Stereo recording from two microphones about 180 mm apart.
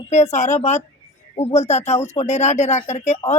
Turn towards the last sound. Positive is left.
turn(degrees=40)  # may be behind; listen again after turning